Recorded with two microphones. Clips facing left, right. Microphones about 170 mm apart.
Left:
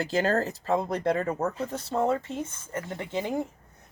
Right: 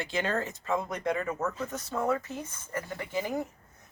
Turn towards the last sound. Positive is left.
turn(degrees=25)  # may be behind; listen again after turning